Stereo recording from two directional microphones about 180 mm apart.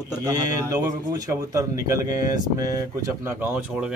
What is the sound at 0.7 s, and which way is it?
Speech, 20° right (ahead or behind).